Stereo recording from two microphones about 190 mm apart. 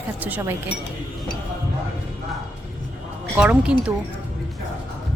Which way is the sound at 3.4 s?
5° right (ahead or behind).